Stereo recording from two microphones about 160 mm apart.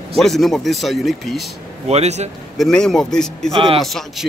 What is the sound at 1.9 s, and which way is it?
Speech, 45° right (ahead or behind).